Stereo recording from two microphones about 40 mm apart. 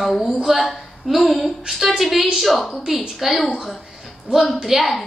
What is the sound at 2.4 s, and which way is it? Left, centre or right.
A woman's voice, centre.